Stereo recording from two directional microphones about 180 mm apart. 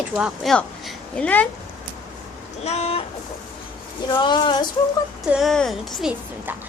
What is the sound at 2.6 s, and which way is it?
Speech, 35° left (ahead or behind).